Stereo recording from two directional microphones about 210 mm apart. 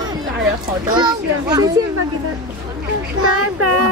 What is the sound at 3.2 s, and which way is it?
Speech, 90° right.